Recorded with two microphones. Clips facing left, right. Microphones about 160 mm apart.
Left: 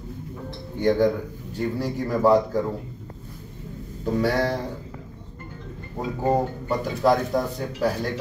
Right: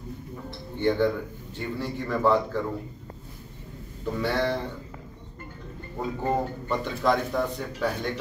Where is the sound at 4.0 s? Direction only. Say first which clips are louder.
Left 4 dB; 40° left (ahead or behind).